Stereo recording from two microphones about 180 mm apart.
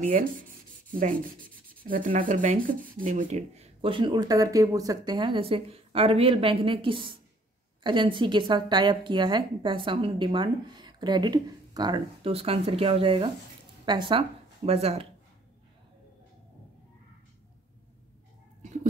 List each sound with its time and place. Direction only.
0.0 s rub: 50° right (ahead or behind)
1.9 s a woman's voice: 45° right (ahead or behind)